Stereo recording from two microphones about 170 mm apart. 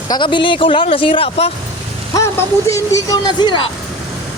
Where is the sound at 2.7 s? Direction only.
20° left (ahead or behind).